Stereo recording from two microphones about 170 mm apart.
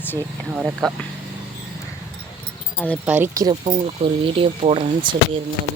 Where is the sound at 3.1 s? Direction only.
10° right (ahead or behind).